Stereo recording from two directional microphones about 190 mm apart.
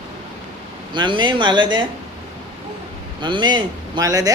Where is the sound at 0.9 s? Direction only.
25° right (ahead or behind).